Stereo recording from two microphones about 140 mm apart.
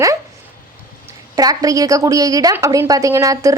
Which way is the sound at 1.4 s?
25° right (ahead or behind).